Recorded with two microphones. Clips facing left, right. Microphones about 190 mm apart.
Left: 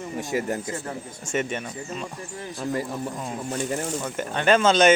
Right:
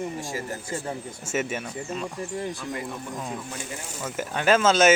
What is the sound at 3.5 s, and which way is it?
Speech, 45° left (ahead or behind).